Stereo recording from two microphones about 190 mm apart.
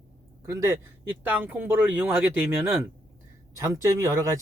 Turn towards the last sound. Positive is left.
turn(degrees=-15)  # may be behind; listen again after turning